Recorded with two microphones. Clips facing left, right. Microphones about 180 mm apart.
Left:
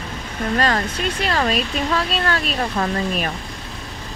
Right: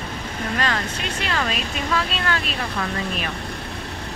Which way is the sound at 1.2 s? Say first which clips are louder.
Left 5 dB; 40° left (ahead or behind).